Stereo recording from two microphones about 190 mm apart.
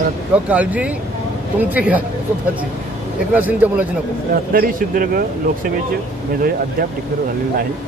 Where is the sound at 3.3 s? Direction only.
10° right (ahead or behind).